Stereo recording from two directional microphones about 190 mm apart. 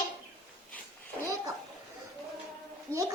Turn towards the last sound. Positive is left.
turn(degrees=10)  # may be behind; listen again after turning